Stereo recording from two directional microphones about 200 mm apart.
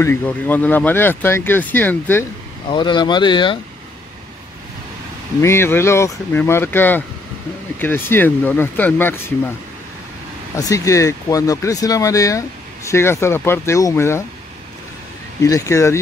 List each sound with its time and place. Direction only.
0.0 s speech: 10° left (ahead or behind)
2.7 s speech: 25° left (ahead or behind)
5.4 s speech: 10° left (ahead or behind)
10.5 s speech: 15° left (ahead or behind)
15.4 s speech: 15° left (ahead or behind)